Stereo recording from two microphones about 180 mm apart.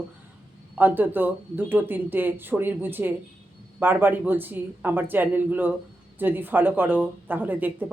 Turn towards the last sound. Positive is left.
turn(degrees=-10)  # may be behind; listen again after turning